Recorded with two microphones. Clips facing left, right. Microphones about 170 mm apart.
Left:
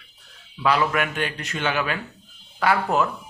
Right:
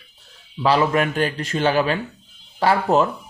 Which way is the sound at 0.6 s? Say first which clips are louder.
Right 4 dB; 30° right (ahead or behind).